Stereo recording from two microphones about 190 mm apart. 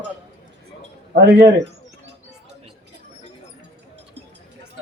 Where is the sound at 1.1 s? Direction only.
65° right (ahead or behind).